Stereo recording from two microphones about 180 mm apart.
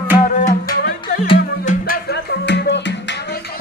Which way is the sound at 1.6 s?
45° left (ahead or behind).